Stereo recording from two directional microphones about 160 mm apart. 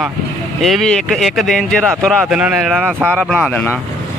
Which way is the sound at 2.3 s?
5° right (ahead or behind).